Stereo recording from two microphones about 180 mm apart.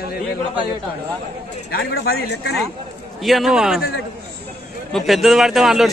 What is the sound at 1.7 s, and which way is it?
Speech, 65° left (ahead or behind).